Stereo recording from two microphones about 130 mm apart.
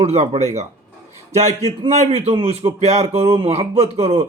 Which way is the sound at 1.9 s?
55° right (ahead or behind).